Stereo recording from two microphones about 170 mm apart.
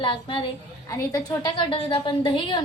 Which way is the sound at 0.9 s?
20° left (ahead or behind).